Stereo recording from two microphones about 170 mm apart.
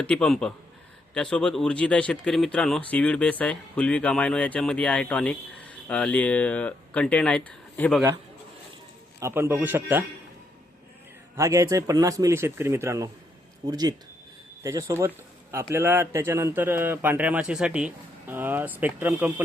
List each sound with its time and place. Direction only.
0.0 s a man's voice: 5° left (ahead or behind)
9.2 s speech: 15° right (ahead or behind)
11.3 s speech: 15° right (ahead or behind)